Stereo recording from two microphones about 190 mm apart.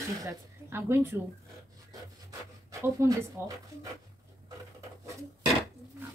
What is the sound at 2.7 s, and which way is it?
A woman's voice, 15° right (ahead or behind).